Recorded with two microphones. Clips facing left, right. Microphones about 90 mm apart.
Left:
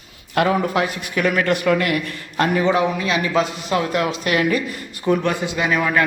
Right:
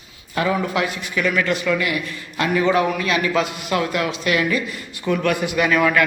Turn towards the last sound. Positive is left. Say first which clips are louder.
# right 2 dB
turn(degrees=15)  # may be behind; listen again after turning